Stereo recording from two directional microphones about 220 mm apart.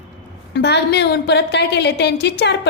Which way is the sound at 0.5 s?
50° left (ahead or behind).